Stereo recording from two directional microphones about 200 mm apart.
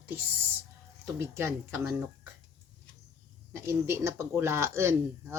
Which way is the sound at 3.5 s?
15° right (ahead or behind).